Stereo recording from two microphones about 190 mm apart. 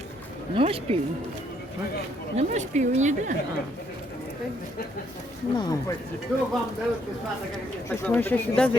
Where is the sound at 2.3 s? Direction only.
35° right (ahead or behind).